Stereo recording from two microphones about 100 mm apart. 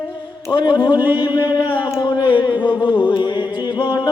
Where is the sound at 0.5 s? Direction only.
50° left (ahead or behind).